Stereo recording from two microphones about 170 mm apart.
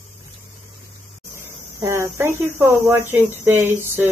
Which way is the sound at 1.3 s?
15° right (ahead or behind).